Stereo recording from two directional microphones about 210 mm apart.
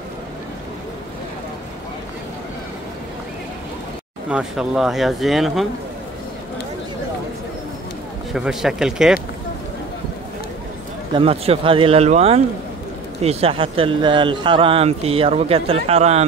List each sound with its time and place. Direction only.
4.3 s speech: 5° right (ahead or behind)
8.3 s speech: centre (ahead or behind)
11.1 s speech: 30° right (ahead or behind)